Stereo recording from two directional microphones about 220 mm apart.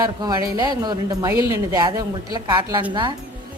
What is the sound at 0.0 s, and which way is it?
Speech, 15° right (ahead or behind).